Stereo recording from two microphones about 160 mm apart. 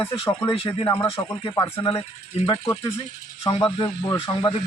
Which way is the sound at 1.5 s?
20° left (ahead or behind).